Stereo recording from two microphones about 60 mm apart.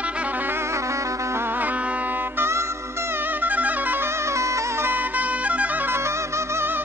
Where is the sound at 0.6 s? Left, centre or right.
Right.